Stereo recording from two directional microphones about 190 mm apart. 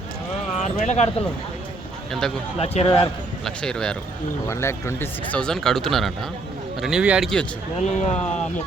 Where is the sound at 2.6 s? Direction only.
30° left (ahead or behind).